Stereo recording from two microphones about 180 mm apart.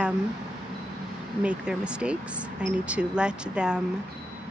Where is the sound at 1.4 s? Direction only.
5° right (ahead or behind).